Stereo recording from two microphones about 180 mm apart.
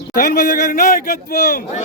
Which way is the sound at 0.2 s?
45° left (ahead or behind).